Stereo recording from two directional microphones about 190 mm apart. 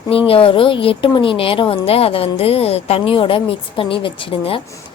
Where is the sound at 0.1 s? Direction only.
30° left (ahead or behind).